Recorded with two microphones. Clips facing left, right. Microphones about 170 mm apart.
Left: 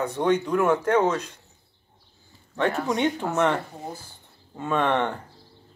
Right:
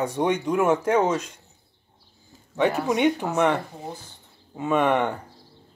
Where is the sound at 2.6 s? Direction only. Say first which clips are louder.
Right 2 dB; 15° right (ahead or behind).